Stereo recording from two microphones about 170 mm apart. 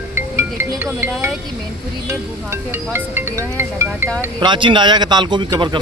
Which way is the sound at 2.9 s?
15° right (ahead or behind).